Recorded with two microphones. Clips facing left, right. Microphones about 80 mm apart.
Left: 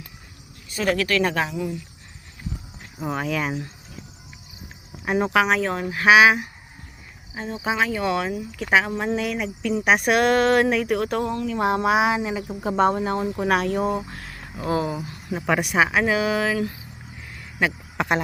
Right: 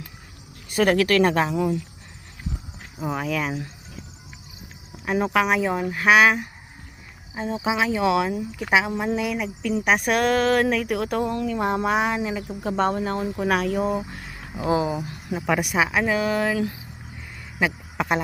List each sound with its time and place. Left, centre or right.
0.7 s speech: right
3.0 s speech: centre
5.0 s speech: centre
7.6 s speech: centre
14.5 s speech: centre
17.2 s a sound: centre